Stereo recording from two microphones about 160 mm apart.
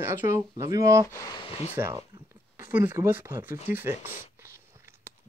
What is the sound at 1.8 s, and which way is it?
Speech, 20° right (ahead or behind).